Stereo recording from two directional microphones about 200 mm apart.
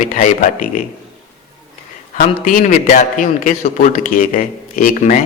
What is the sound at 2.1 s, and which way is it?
A man's voice, 40° left (ahead or behind).